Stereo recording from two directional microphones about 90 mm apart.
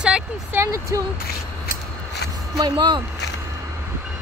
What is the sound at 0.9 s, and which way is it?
Speech, 35° right (ahead or behind).